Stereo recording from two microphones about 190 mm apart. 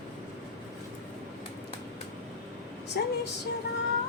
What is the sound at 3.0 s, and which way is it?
Speech, 55° left (ahead or behind).